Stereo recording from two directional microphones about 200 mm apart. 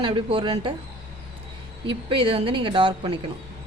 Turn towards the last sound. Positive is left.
turn(degrees=-25)  # may be behind; listen again after turning